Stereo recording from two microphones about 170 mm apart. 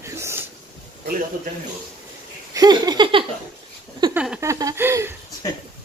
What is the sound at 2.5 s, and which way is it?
Laughter, 25° right (ahead or behind).